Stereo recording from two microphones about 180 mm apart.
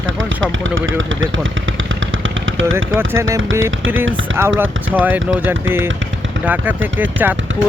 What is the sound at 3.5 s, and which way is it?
Speech, 90° right.